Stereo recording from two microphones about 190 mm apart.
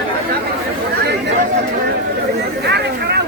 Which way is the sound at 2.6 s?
60° right (ahead or behind).